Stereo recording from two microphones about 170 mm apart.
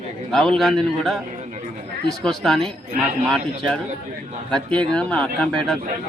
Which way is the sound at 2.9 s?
55° right (ahead or behind).